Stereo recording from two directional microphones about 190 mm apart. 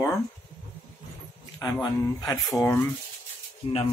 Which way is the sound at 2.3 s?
5° left (ahead or behind).